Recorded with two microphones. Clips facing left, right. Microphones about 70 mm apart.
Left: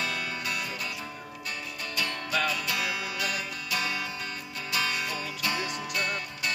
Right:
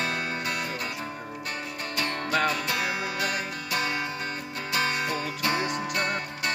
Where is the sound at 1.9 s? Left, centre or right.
Right.